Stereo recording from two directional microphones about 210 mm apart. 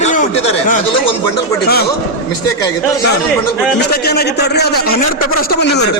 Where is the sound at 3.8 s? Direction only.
50° left (ahead or behind).